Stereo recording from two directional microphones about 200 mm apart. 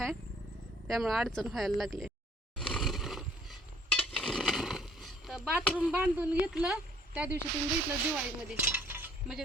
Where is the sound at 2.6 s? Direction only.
Centre (ahead or behind).